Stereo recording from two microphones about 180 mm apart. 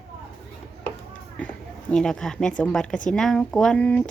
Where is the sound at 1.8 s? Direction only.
5° left (ahead or behind).